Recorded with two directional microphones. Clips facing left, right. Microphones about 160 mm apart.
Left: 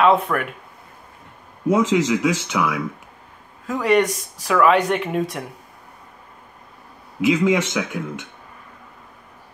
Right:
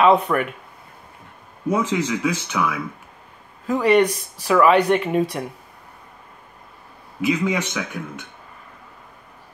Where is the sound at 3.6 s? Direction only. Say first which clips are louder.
Right 2 dB; centre (ahead or behind).